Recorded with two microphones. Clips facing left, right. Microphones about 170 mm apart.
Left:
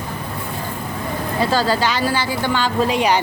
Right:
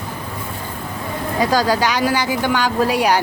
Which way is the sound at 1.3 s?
15° right (ahead or behind).